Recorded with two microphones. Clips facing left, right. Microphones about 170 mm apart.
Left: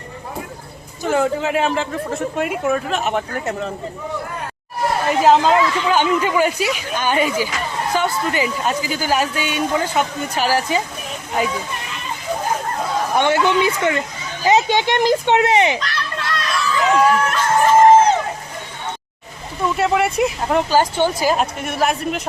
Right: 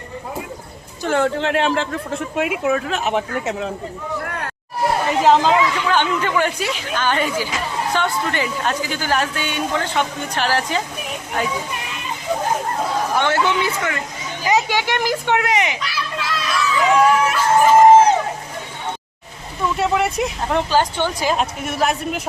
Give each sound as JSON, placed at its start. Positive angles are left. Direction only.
{"t": 1.0, "sound": "speech", "side_deg": 5}
{"t": 5.2, "sound": "speech", "side_deg": 0}
{"t": 13.1, "sound": "a child's voice", "side_deg": 15}
{"t": 15.8, "sound": "a sound", "side_deg": -5}
{"t": 19.7, "sound": "speech", "side_deg": 0}